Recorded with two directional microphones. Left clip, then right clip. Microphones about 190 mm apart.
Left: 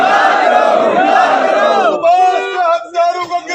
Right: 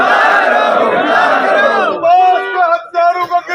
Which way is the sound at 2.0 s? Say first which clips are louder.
Right 4 dB; 5° left (ahead or behind).